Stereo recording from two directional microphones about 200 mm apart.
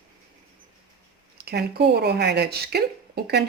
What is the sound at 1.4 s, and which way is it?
Speech, 50° right (ahead or behind).